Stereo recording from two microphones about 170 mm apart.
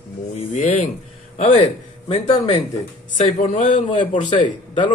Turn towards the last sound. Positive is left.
turn(degrees=45)  # may be behind; listen again after turning